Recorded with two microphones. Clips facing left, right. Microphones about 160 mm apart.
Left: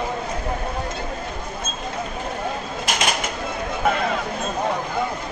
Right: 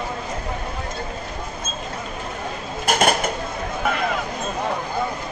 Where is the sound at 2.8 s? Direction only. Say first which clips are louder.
Right 6 dB; 50° right (ahead or behind).